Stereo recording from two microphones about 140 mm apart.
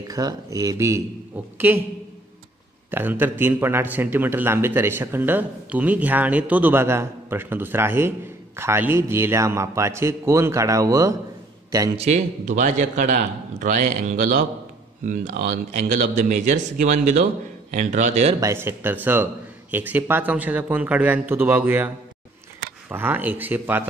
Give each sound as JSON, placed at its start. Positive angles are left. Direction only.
{"t": 0.1, "sound": "a man's voice", "side_deg": -25}
{"t": 2.9, "sound": "a man's voice", "side_deg": -15}
{"t": 12.0, "sound": "a man's voice", "side_deg": -55}
{"t": 18.4, "sound": "a man's voice", "side_deg": -20}